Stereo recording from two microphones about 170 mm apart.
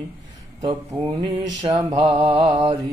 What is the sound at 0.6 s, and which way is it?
Mantra, 30° right (ahead or behind).